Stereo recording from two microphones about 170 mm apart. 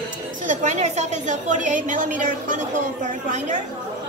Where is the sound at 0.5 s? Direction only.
45° right (ahead or behind).